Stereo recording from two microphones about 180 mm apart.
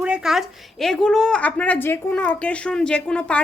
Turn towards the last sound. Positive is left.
turn(degrees=5)  # may be behind; listen again after turning